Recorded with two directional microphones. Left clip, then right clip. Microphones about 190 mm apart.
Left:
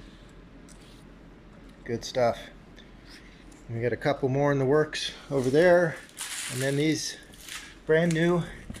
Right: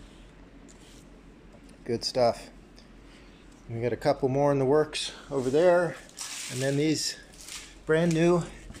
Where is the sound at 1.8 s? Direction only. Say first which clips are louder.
Right 1 dB; 5° right (ahead or behind).